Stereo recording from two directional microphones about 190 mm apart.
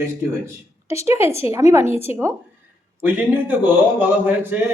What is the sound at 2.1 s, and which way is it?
Speech, 15° right (ahead or behind).